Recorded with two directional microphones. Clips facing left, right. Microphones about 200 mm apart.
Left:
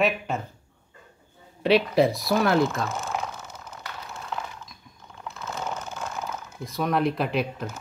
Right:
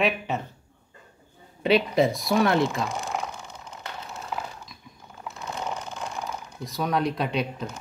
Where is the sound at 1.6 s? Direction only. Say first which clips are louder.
Left 1 dB; centre (ahead or behind).